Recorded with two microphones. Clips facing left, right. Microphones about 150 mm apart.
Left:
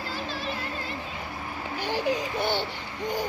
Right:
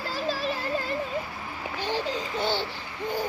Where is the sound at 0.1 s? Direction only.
35° right (ahead or behind).